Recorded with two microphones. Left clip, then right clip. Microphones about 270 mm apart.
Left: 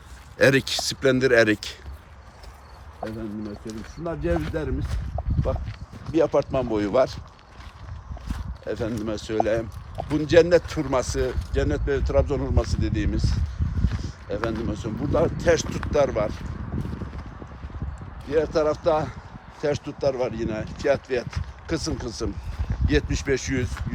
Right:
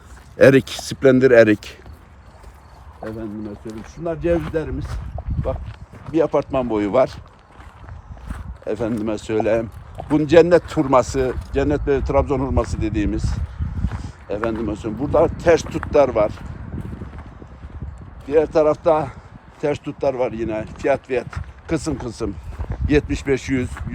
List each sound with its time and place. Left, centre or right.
0.3 s speech: centre
4.1 s speech: right
6.1 s speech: right
8.3 s a sound: centre
8.6 s speech: centre
18.3 s speech: centre